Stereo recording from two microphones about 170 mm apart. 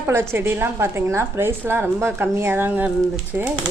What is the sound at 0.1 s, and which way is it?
A woman's voice, 15° right (ahead or behind).